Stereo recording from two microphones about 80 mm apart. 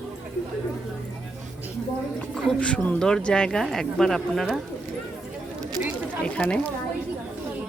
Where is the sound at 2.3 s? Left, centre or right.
Centre.